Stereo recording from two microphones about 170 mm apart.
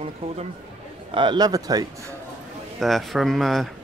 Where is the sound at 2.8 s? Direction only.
Centre (ahead or behind).